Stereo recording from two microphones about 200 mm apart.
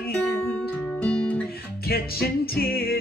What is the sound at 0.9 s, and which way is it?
Guitar, 5° left (ahead or behind).